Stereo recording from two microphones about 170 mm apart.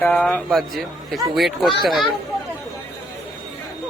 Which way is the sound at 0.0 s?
5° left (ahead or behind).